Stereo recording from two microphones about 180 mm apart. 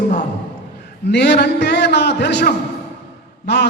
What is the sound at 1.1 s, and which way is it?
A man's voice, 70° left (ahead or behind).